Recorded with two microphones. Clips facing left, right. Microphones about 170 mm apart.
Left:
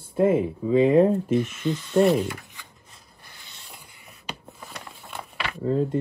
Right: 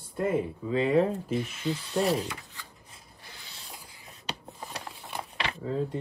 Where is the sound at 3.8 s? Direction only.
65° left (ahead or behind).